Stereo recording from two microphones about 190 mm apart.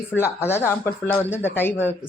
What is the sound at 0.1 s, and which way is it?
Speech, 15° left (ahead or behind).